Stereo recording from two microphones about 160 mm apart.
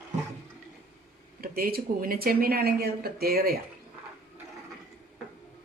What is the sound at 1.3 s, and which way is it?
Speech, 70° right (ahead or behind).